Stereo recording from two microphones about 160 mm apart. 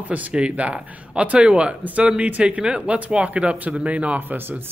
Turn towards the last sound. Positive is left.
turn(degrees=-15)  # may be behind; listen again after turning